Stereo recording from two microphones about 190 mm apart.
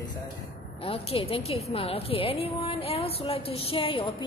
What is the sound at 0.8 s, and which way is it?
A woman's voice, 30° left (ahead or behind).